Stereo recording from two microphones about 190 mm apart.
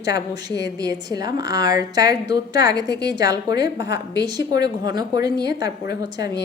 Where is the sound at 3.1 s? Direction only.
20° right (ahead or behind).